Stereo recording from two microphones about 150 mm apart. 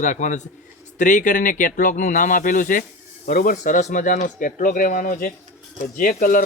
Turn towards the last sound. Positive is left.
turn(degrees=65)  # may be behind; listen again after turning